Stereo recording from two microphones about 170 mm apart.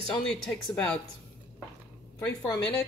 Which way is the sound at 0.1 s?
5° left (ahead or behind).